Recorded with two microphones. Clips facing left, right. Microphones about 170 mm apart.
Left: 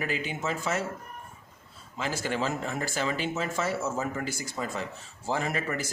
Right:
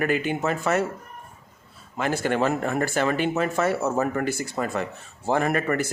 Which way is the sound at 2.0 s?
60° right (ahead or behind).